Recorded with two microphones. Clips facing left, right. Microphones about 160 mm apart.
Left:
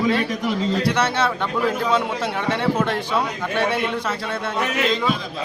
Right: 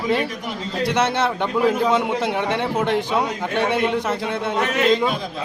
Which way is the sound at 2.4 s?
15° right (ahead or behind).